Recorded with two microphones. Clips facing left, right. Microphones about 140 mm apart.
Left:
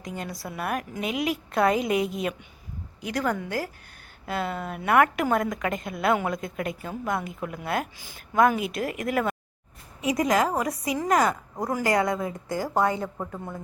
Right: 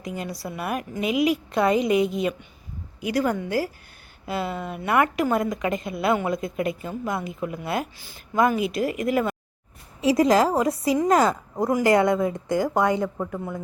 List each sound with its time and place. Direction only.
0.0 s a woman's voice: 5° right (ahead or behind)
10.0 s a woman's voice: 30° right (ahead or behind)
13.0 s speech: 5° left (ahead or behind)